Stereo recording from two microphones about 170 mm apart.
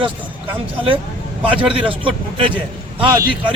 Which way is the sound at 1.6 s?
30° right (ahead or behind).